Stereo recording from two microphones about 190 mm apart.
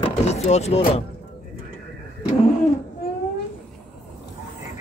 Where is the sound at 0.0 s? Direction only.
35° left (ahead or behind).